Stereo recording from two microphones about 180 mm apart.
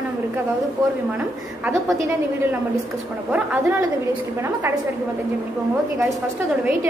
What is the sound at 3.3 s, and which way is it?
Speech, 5° right (ahead or behind).